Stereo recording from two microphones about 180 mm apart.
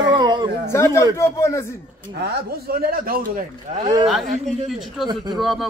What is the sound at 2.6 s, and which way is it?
A man's voice, 55° right (ahead or behind).